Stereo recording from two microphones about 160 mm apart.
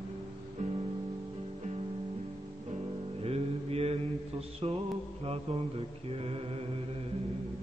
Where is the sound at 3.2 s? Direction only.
40° right (ahead or behind).